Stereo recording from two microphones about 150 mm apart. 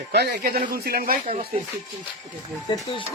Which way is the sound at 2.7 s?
35° left (ahead or behind).